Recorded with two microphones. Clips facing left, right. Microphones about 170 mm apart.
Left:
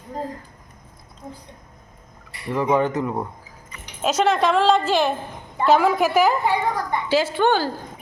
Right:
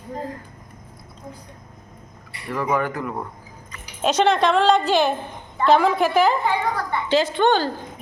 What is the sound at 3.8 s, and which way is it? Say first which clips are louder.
A woman's voice: right 1 dB; 5° left (ahead or behind).